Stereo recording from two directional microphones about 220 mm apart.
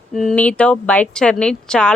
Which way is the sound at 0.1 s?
Centre (ahead or behind).